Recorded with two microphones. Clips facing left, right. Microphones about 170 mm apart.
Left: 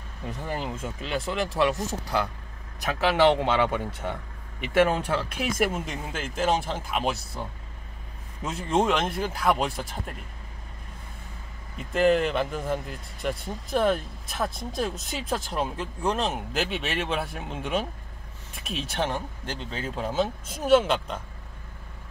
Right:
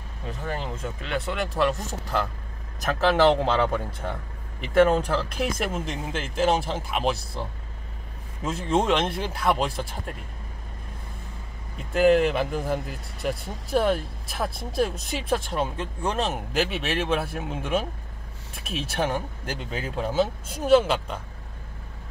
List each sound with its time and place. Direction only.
0.5 s speech: 5° left (ahead or behind)
3.0 s speech: 5° left (ahead or behind)
8.6 s speech: 5° left (ahead or behind)
11.9 s speech: centre (ahead or behind)